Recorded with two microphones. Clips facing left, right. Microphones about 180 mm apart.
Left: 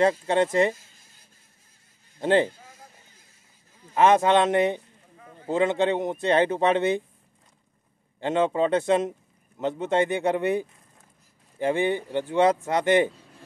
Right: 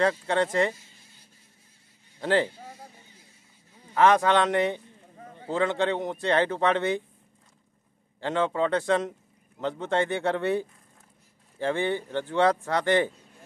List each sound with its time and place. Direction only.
0.0 s a man's voice: 20° left (ahead or behind)
2.1 s speech: 20° left (ahead or behind)
3.9 s a man's voice: 20° left (ahead or behind)
8.2 s a man's voice: 20° left (ahead or behind)